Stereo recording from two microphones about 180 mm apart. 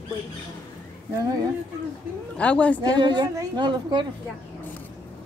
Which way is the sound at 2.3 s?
5° left (ahead or behind).